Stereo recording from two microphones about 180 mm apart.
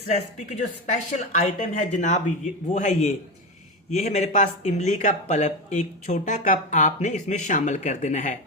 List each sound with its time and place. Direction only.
0.1 s speech: 40° left (ahead or behind)